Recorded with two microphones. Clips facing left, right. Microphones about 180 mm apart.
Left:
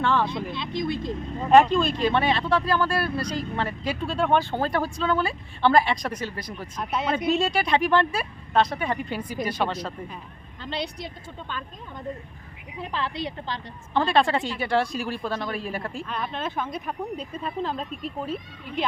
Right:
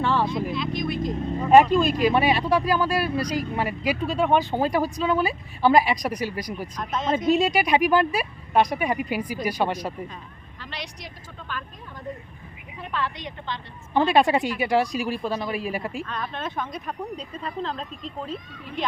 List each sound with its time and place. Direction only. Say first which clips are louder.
0.0 s speech: even; 10° right (ahead or behind)
0.5 s speech: right 1 dB; 25° left (ahead or behind)
1.5 s speech: right 1 dB; 5° right (ahead or behind)
6.7 s speech: even; 10° left (ahead or behind)
7.3 s speech: right 4 dB; 10° right (ahead or behind)
10.6 s speech: left 6 dB; 30° left (ahead or behind)
12.9 s a woman's voice: even; 30° left (ahead or behind)
13.9 s speech: right 2 dB; 10° right (ahead or behind); by 18.3 s 5° left (ahead or behind)